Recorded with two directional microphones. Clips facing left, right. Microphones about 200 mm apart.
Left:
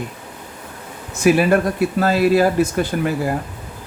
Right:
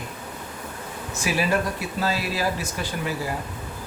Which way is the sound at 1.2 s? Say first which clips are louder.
Left 10 dB; 55° left (ahead or behind).